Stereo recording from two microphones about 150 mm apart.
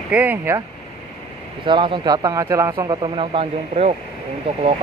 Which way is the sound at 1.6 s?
30° right (ahead or behind).